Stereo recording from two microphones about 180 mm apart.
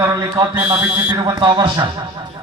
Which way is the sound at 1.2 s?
25° right (ahead or behind).